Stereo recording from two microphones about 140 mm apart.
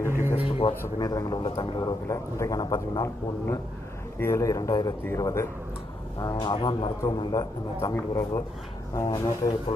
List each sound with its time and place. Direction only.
0.3 s speech: 40° left (ahead or behind)
1.0 s a man's voice: 25° left (ahead or behind)
2.0 s a man's voice: 20° left (ahead or behind)
4.2 s a man's voice: 20° left (ahead or behind)
6.1 s a man's voice: 30° left (ahead or behind)